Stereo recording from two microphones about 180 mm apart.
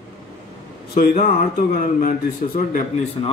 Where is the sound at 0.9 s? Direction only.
55° left (ahead or behind).